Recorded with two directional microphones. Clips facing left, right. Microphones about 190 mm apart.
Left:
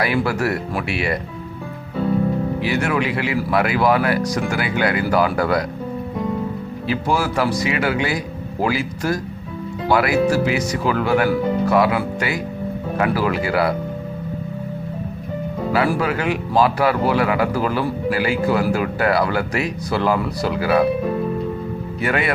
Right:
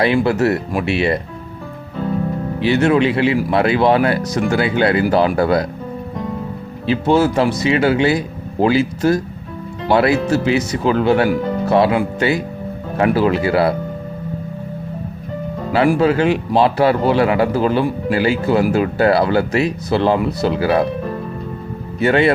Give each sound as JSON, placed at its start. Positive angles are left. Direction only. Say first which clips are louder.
{"t": 0.0, "sound": "speech", "louder": "right 5 dB", "side_deg": -25}
{"t": 2.6, "sound": "speech", "louder": "right 11 dB", "side_deg": -25}
{"t": 6.8, "sound": "speech", "louder": "right 7 dB", "side_deg": -25}
{"t": 16.0, "sound": "speech", "louder": "right 6 dB", "side_deg": -25}
{"t": 22.0, "sound": "speech", "louder": "right 7 dB", "side_deg": -25}